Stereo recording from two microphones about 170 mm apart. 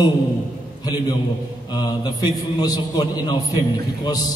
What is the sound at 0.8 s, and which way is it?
A man's voice, 25° left (ahead or behind).